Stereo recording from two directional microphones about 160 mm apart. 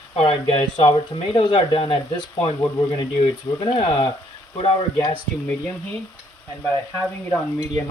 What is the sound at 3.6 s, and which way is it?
Speech, 30° left (ahead or behind).